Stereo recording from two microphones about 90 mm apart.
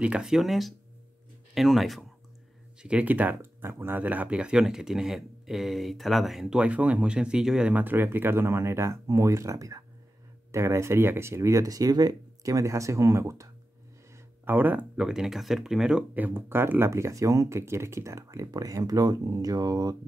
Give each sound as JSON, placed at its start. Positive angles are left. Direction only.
{"t": 0.0, "sound": "speech", "side_deg": -10}
{"t": 2.8, "sound": "speech", "side_deg": -10}
{"t": 7.8, "sound": "speech", "side_deg": -25}
{"t": 14.4, "sound": "speech", "side_deg": -20}
{"t": 15.0, "sound": "speech", "side_deg": -5}
{"t": 16.2, "sound": "speech", "side_deg": -20}